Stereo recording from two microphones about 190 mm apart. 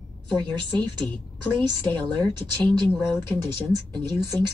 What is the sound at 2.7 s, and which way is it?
Speech, 10° left (ahead or behind).